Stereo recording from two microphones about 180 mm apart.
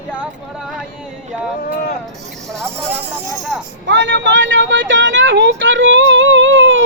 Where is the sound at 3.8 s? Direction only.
90° right.